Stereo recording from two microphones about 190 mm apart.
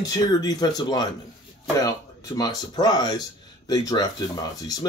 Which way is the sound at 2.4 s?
20° left (ahead or behind).